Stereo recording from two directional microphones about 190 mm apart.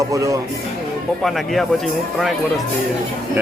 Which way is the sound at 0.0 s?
15° right (ahead or behind).